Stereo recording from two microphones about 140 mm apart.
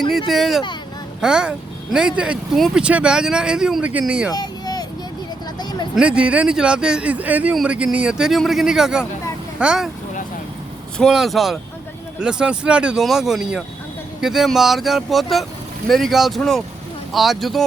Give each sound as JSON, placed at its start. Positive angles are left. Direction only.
{"t": 0.1, "sound": "speech", "side_deg": 0}
{"t": 4.3, "sound": "a sound", "side_deg": 30}
{"t": 6.0, "sound": "a man's voice", "side_deg": -10}
{"t": 10.9, "sound": "speech", "side_deg": 0}